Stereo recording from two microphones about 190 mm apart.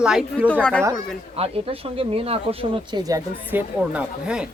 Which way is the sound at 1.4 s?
30° right (ahead or behind).